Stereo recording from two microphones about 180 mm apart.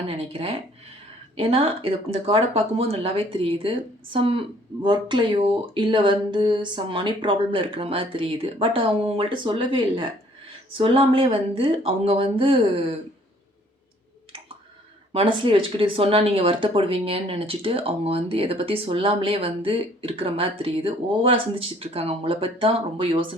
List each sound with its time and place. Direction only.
0.1 s speech: 35° right (ahead or behind)
15.1 s speech: 30° right (ahead or behind)